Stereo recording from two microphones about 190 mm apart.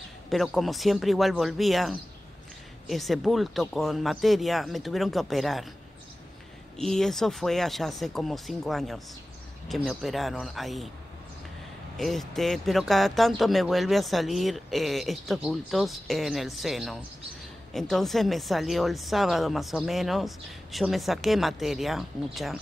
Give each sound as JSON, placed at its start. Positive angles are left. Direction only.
{"t": 0.3, "sound": "speech", "side_deg": 0}
{"t": 6.8, "sound": "speech", "side_deg": 5}
{"t": 12.0, "sound": "speech", "side_deg": 0}